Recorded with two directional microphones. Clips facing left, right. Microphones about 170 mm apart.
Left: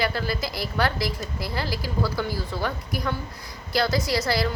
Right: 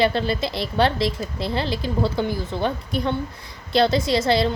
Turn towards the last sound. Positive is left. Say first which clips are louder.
# right 5 dB
turn(degrees=-25)  # may be behind; listen again after turning